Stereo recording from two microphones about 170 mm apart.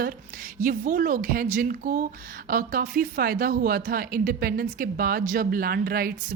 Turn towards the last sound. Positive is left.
turn(degrees=-60)  # may be behind; listen again after turning